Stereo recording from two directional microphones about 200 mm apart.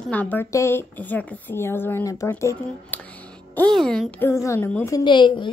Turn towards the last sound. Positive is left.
turn(degrees=25)  # may be behind; listen again after turning